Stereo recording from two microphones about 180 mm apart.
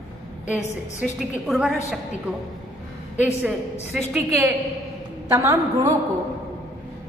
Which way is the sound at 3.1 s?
5° right (ahead or behind).